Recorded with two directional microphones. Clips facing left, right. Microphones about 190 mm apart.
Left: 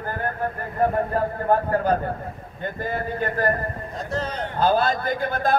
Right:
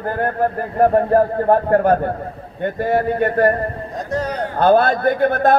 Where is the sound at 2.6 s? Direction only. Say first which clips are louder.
Right 10 dB; 65° right (ahead or behind).